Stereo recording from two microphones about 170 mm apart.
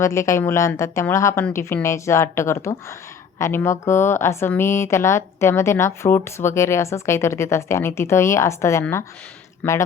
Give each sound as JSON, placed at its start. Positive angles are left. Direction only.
{"t": 0.0, "sound": "a woman's voice", "side_deg": 15}